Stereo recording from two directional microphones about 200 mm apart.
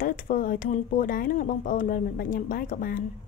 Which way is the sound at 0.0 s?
45° left (ahead or behind).